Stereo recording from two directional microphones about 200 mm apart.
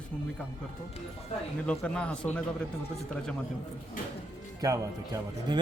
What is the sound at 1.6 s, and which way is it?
Speech, 5° left (ahead or behind).